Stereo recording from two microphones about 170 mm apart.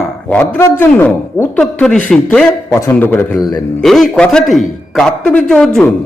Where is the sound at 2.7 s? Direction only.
15° left (ahead or behind).